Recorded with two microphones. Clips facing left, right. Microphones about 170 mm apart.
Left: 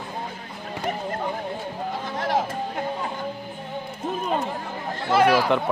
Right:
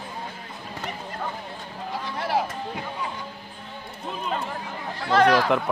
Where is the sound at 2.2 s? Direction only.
5° right (ahead or behind).